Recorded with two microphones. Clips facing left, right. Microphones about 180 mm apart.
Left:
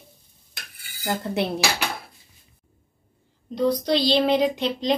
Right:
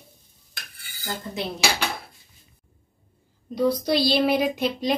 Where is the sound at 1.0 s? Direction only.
65° left (ahead or behind).